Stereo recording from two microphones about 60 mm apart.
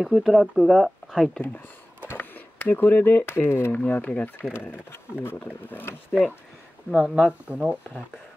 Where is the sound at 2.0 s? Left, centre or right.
Left.